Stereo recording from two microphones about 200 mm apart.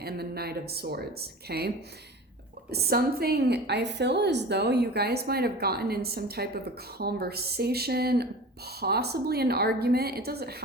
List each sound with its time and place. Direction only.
0.0 s a woman's voice: 50° right (ahead or behind)